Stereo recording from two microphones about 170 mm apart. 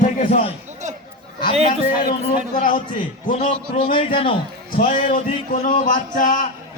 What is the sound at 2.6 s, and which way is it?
A man's voice, 55° left (ahead or behind).